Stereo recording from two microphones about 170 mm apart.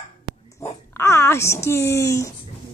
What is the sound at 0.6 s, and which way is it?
Speech, 15° left (ahead or behind).